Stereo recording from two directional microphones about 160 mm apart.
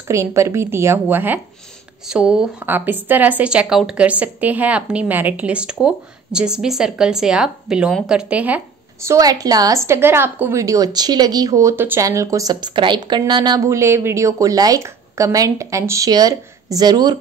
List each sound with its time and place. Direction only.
0.1 s a woman's voice: 20° right (ahead or behind)